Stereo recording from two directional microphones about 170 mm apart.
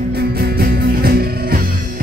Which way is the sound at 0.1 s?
65° right (ahead or behind).